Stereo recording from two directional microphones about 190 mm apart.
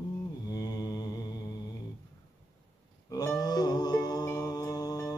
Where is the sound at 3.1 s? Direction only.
15° left (ahead or behind).